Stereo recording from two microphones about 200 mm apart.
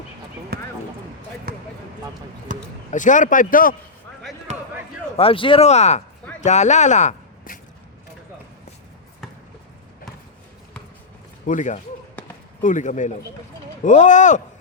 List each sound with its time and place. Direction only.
0.5 s a sound: 50° right (ahead or behind)
2.5 s speech: 40° right (ahead or behind)
2.9 s a man's voice: 40° left (ahead or behind)
4.5 s basketball bounce: 35° right (ahead or behind)
5.1 s a man's voice: 30° left (ahead or behind)
11.4 s a man's voice: 40° left (ahead or behind)